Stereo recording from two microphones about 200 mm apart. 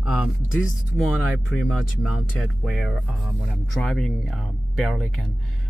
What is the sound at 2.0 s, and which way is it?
Speech, centre (ahead or behind).